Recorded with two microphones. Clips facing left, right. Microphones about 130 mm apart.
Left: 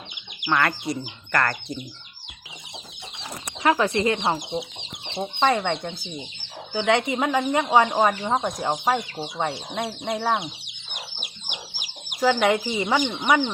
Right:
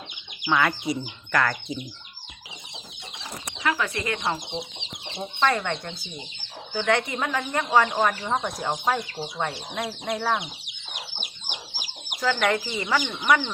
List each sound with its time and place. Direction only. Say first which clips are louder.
0.4 s speech: even; centre (ahead or behind)
3.6 s speech: left 6 dB; 35° left (ahead or behind); by 5.7 s 20° left (ahead or behind)
6.8 s speech: left 3 dB; 20° left (ahead or behind)
10.9 s chicken: left 1 dB; 5° left (ahead or behind)
12.5 s speech: left 3 dB; 25° left (ahead or behind)